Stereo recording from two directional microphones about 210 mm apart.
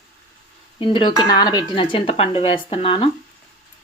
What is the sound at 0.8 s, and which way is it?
Speech, 25° left (ahead or behind).